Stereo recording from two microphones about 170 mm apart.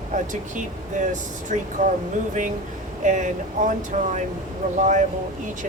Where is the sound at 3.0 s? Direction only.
45° right (ahead or behind).